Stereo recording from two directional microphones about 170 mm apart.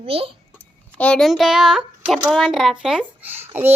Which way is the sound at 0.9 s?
5° left (ahead or behind).